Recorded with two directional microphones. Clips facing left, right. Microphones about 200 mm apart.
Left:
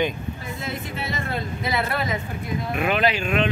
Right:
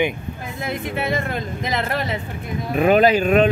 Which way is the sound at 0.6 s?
55° right (ahead or behind).